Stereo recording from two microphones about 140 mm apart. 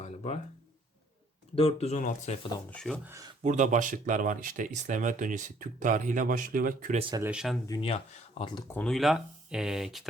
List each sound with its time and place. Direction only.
0.0 s music: 50° left (ahead or behind)
1.5 s speech: 45° left (ahead or behind)
2.6 s speech: 5° left (ahead or behind)
2.9 s speech: 10° right (ahead or behind)
3.4 s speech: 60° right (ahead or behind); by 6.9 s 80° right
7.2 s speech: 5° right (ahead or behind)
7.8 s speech: 45° left (ahead or behind)
8.7 s speech: 5° left (ahead or behind)